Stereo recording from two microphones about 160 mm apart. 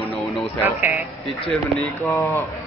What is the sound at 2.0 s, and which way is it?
Speech, 15° left (ahead or behind).